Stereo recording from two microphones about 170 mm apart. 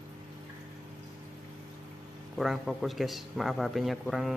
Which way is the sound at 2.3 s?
Centre (ahead or behind).